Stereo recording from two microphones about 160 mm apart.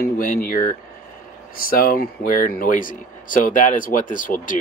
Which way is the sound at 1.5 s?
65° left (ahead or behind).